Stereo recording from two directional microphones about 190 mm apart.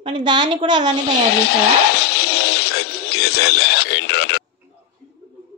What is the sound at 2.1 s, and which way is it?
Radio, 60° left (ahead or behind).